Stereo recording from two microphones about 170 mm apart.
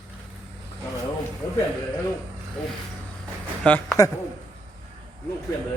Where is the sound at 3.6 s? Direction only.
5° left (ahead or behind).